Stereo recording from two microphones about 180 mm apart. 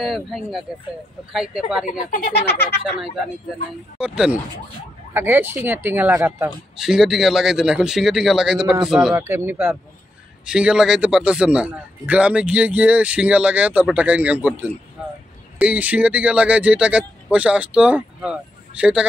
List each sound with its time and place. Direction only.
0.0 s speech: centre (ahead or behind)
1.9 s speech: 50° left (ahead or behind)
4.0 s a man's voice: 5° right (ahead or behind)